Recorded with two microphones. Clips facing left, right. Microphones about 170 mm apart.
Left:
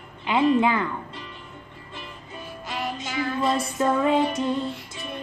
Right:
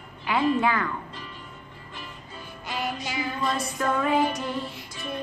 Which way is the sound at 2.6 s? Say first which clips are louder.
Even; centre (ahead or behind).